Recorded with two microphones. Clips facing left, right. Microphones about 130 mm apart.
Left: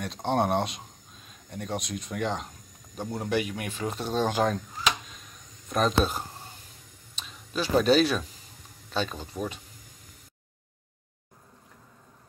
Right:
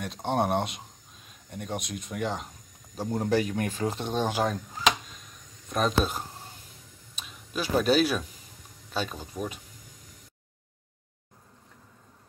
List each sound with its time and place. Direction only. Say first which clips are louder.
0.0 s speech: left 1 dB; 10° right (ahead or behind)
3.0 s speech: right 3 dB; 35° right (ahead or behind)
3.9 s speech: left 1 dB; 20° right (ahead or behind)
5.7 s speech: left 1 dB; centre (ahead or behind)